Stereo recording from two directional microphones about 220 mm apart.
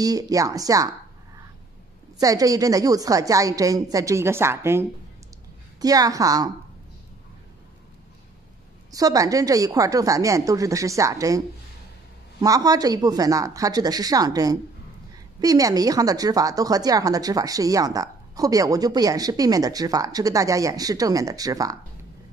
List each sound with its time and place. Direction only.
0.0 s a woman's voice: 15° right (ahead or behind)
2.1 s a woman's voice: 15° right (ahead or behind)
8.9 s a woman's voice: 15° right (ahead or behind)